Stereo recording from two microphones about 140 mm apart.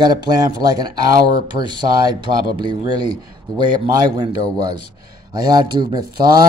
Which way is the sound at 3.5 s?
30° right (ahead or behind).